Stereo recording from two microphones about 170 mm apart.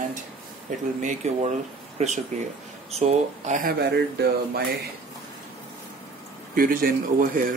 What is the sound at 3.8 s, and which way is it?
Speech, 70° right (ahead or behind).